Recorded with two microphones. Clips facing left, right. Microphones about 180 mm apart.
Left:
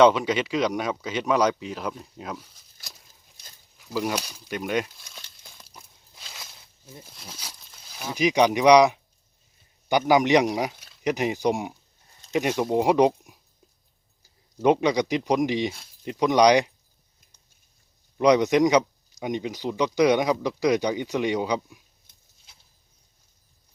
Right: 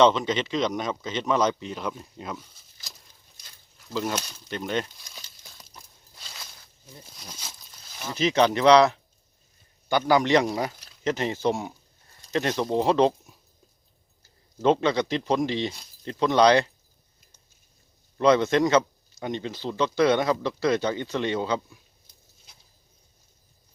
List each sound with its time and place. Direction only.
0.0 s speech: 10° left (ahead or behind)
3.8 s crumpling: 5° left (ahead or behind)
6.8 s speech: 5° left (ahead or behind)
14.6 s speech: 15° left (ahead or behind)
18.2 s speech: 15° left (ahead or behind)